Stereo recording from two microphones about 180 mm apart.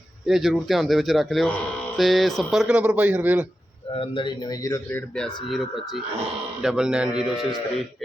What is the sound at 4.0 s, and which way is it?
A man's voice, 25° left (ahead or behind).